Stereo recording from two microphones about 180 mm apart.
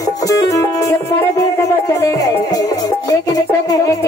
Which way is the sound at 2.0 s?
20° left (ahead or behind).